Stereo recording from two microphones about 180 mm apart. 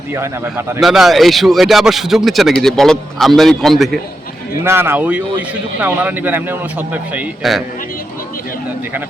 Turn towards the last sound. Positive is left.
turn(degrees=-5)  # may be behind; listen again after turning